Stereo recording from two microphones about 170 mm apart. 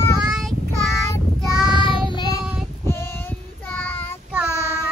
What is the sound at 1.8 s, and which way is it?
Child singing, 30° left (ahead or behind).